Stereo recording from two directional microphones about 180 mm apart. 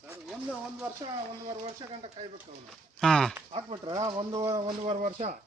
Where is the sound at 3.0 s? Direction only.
5° left (ahead or behind).